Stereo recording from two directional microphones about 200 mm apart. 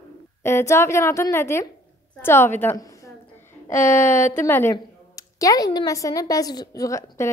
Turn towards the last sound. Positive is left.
turn(degrees=15)  # may be behind; listen again after turning